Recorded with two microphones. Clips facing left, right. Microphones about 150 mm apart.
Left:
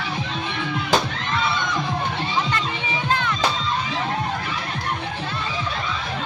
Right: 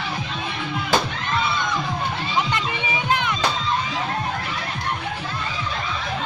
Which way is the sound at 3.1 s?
15° right (ahead or behind).